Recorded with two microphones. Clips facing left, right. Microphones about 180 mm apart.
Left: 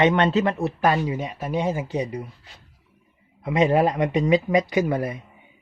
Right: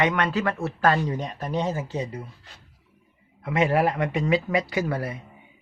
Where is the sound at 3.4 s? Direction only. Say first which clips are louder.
Left 3 dB; 20° left (ahead or behind).